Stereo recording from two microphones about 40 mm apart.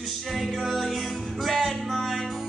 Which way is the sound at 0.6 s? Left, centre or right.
Centre.